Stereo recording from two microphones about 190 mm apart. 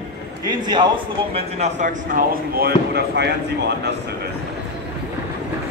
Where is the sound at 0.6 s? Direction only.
25° right (ahead or behind).